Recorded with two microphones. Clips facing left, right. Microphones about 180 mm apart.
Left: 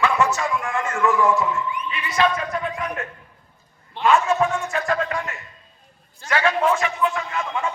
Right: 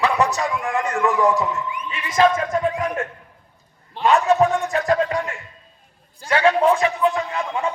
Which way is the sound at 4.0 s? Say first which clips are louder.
Right 2 dB; 35° right (ahead or behind).